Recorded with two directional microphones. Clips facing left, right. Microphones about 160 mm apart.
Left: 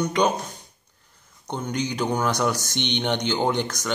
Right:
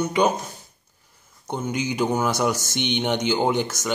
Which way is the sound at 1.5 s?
10° right (ahead or behind).